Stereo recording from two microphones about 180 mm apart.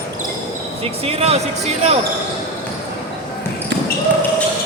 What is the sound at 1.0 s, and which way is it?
Speech, 35° right (ahead or behind).